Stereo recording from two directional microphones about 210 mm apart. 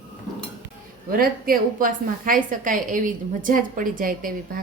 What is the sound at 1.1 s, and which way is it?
A woman's voice, 45° right (ahead or behind).